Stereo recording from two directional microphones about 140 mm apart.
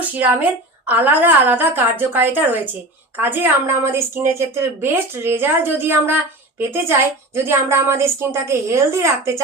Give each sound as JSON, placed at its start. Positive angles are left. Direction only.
{"t": 0.0, "sound": "a woman's voice", "side_deg": -10}
{"t": 7.3, "sound": "a woman's voice", "side_deg": -20}